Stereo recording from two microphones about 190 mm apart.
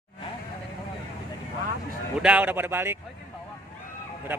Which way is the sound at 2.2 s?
5° right (ahead or behind).